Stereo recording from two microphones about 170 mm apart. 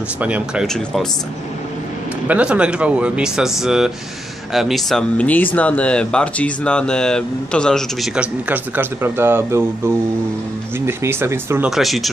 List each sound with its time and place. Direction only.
0.2 s speech: 5° right (ahead or behind)
2.2 s speech: 10° right (ahead or behind)
11.7 s speech: centre (ahead or behind)